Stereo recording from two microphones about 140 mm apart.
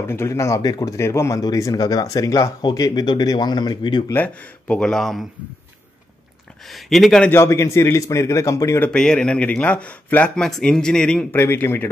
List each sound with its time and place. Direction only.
0.0 s speech: 20° left (ahead or behind)
4.1 s a man's voice: 10° left (ahead or behind)
6.7 s speech: centre (ahead or behind)
7.2 s a man's voice: 20° left (ahead or behind)
11.3 s a man's voice: 15° left (ahead or behind)